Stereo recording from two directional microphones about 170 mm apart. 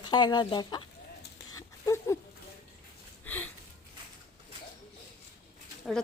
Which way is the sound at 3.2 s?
10° left (ahead or behind).